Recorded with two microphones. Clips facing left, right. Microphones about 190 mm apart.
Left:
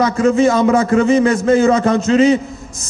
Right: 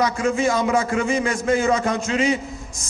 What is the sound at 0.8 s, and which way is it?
A man's voice, 35° left (ahead or behind).